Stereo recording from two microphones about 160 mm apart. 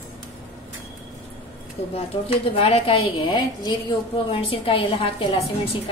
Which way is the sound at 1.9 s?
35° left (ahead or behind).